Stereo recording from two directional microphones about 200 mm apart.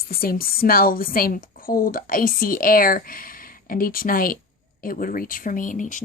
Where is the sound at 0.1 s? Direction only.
50° left (ahead or behind).